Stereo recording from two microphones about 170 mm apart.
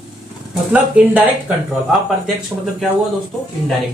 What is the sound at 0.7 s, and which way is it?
Speech, 10° right (ahead or behind).